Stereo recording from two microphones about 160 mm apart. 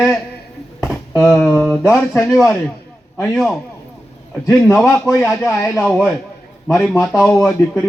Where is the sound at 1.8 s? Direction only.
15° left (ahead or behind).